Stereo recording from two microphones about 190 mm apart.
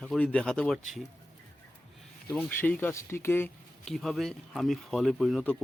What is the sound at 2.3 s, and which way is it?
Speech, 10° left (ahead or behind).